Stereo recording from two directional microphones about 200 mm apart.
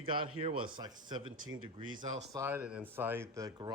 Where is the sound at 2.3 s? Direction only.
10° right (ahead or behind).